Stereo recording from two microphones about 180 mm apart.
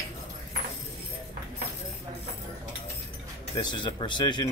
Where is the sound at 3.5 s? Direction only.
25° left (ahead or behind).